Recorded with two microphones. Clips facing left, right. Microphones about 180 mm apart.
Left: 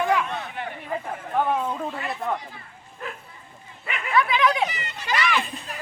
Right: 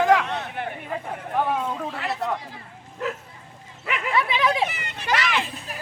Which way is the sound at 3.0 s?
90° right.